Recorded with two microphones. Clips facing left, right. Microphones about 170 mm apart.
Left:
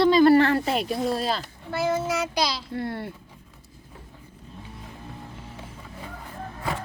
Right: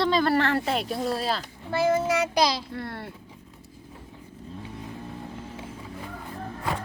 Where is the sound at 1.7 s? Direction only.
55° right (ahead or behind).